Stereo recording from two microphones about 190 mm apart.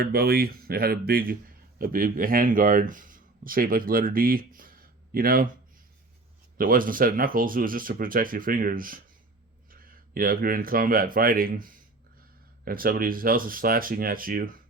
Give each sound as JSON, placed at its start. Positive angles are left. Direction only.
{"t": 0.0, "sound": "speech", "side_deg": -55}
{"t": 6.6, "sound": "speech", "side_deg": -45}